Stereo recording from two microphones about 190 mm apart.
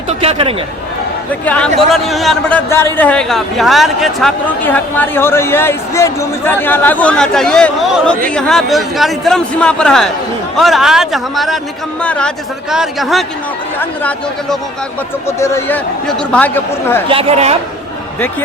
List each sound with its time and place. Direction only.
0.1 s chatter: 30° right (ahead or behind)
1.5 s a man's voice: 5° left (ahead or behind)
15.4 s speech: 15° left (ahead or behind)
17.1 s speech: 30° right (ahead or behind)